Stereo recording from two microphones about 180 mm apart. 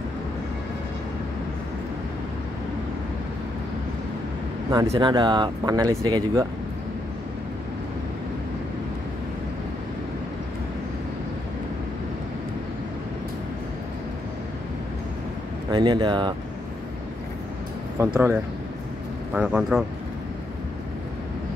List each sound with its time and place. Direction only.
4.9 s speech: 25° right (ahead or behind)
15.7 s speech: 25° right (ahead or behind)
17.9 s speech: 15° right (ahead or behind)